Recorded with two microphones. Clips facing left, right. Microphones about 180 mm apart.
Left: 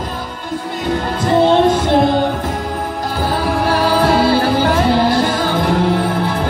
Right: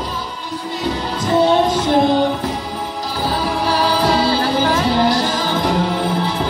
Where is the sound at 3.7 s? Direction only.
55° left (ahead or behind).